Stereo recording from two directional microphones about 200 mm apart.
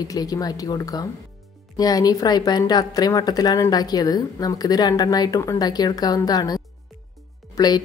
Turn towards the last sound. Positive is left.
turn(degrees=20)  # may be behind; listen again after turning